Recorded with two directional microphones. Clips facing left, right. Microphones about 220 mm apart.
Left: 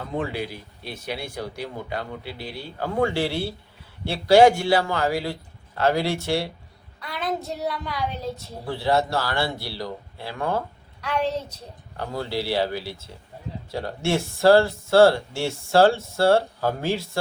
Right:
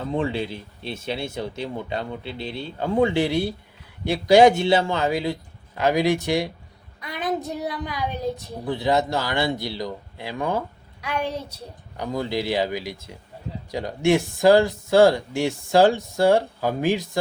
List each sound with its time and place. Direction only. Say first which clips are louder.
0.2 s a man's voice: even; 25° right (ahead or behind)